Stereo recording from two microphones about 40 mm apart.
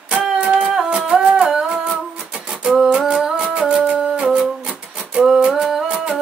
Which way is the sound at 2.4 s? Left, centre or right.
Right.